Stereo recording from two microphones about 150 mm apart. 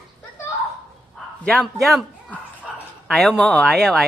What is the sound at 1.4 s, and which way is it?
Speech, 5° left (ahead or behind).